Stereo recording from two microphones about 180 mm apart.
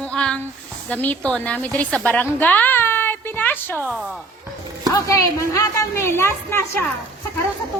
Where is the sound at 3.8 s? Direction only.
5° right (ahead or behind).